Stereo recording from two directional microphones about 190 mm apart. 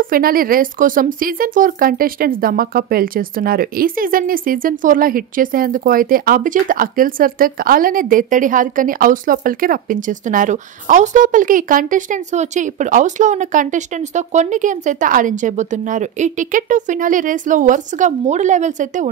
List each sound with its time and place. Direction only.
0.0 s speech: 50° right (ahead or behind)